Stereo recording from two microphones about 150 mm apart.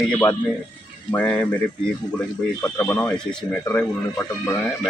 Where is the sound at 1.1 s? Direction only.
10° left (ahead or behind).